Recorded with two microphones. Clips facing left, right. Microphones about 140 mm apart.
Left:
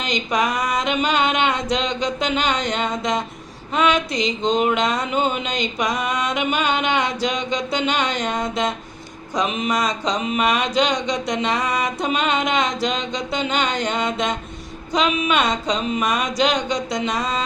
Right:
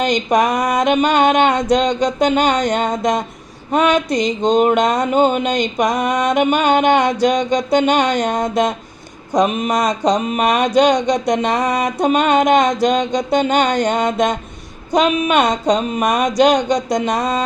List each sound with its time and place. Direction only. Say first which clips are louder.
0.0 s mantra: right 7 dB; 50° right (ahead or behind)